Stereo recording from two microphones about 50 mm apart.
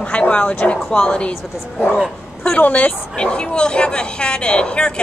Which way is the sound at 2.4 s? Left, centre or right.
Left.